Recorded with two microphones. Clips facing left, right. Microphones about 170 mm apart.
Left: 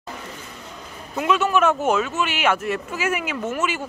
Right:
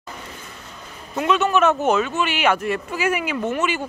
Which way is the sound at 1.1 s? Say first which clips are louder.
Right 1 dB; 5° left (ahead or behind).